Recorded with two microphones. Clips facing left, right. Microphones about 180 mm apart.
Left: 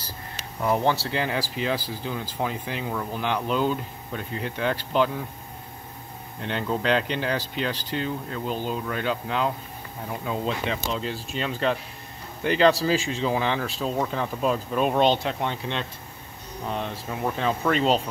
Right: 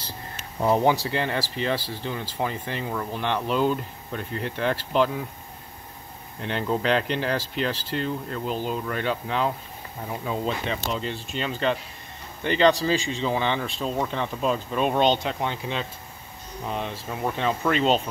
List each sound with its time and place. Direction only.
0.6 s speech: 25° right (ahead or behind)
0.8 s speech: 10° right (ahead or behind)
1.1 s speech: centre (ahead or behind)
6.4 s speech: centre (ahead or behind)